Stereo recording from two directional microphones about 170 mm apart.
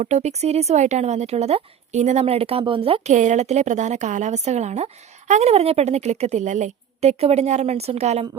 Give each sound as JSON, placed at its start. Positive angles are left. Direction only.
{"t": 0.0, "sound": "speech", "side_deg": -40}